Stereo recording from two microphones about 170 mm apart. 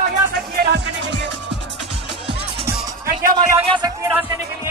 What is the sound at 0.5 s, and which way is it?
Music, 80° right.